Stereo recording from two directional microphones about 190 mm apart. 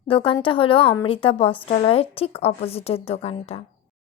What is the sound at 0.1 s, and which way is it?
A woman's voice, 25° left (ahead or behind).